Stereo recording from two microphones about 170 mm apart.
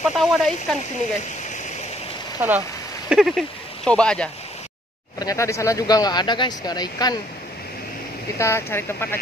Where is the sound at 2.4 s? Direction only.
10° right (ahead or behind).